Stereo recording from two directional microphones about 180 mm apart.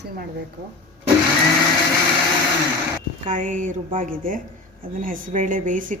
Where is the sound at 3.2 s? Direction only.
45° right (ahead or behind).